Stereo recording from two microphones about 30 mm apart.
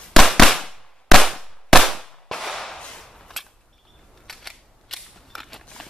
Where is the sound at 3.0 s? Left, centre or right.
Centre.